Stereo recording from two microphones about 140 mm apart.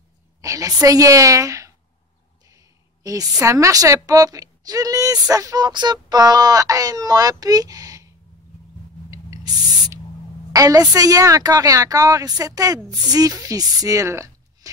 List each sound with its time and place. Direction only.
0.4 s a woman's voice: 25° right (ahead or behind)
9.1 s a sound: 25° right (ahead or behind)
10.5 s a woman's voice: 25° right (ahead or behind)